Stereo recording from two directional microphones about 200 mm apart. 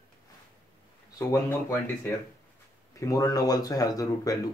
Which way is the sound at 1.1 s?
15° left (ahead or behind).